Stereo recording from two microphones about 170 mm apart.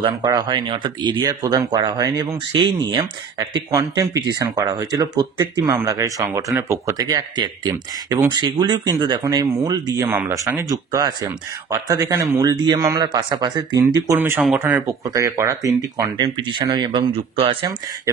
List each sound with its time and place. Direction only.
0.0 s speech: 25° right (ahead or behind)
14.1 s speech: 15° right (ahead or behind)
14.9 s speech: 20° right (ahead or behind)
18.1 s speech: 20° right (ahead or behind)